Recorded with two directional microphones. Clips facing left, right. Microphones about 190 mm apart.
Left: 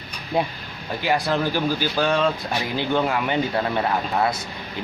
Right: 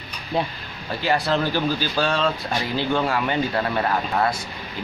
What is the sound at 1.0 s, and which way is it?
Speech, 15° left (ahead or behind).